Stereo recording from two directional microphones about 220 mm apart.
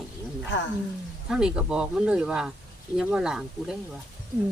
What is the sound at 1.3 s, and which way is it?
Speech, 5° right (ahead or behind).